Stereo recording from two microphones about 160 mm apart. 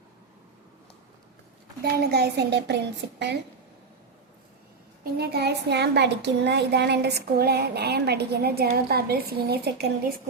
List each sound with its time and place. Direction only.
1.8 s speech: 85° right
5.1 s speech: 90° right